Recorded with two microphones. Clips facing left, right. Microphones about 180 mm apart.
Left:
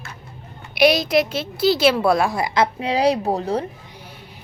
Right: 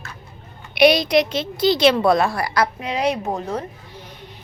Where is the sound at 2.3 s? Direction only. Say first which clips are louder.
Left 2 dB; 20° left (ahead or behind).